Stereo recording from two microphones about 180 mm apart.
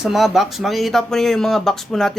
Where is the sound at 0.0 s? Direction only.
Centre (ahead or behind).